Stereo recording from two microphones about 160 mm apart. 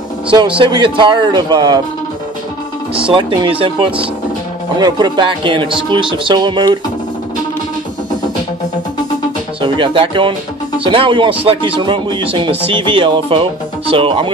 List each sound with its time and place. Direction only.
0.6 s speech: 30° right (ahead or behind)
2.9 s speech: 35° right (ahead or behind)
9.6 s speech: 35° right (ahead or behind)